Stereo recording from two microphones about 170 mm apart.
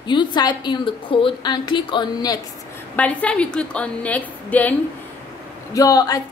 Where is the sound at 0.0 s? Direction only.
30° left (ahead or behind).